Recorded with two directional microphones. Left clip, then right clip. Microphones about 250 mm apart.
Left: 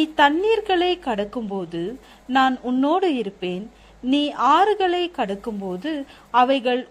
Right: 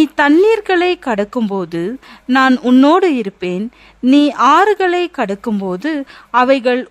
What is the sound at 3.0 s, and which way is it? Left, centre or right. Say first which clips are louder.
Speech: right 7 dB; right.